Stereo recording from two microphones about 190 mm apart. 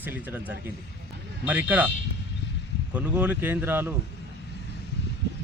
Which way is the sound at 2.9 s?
10° right (ahead or behind).